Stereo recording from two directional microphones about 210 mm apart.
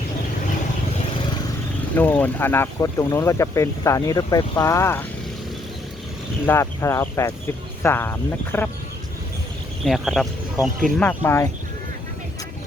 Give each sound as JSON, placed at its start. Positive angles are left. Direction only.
{"t": 2.0, "sound": "speech", "side_deg": 10}
{"t": 6.4, "sound": "speech", "side_deg": 10}
{"t": 9.8, "sound": "speech", "side_deg": 0}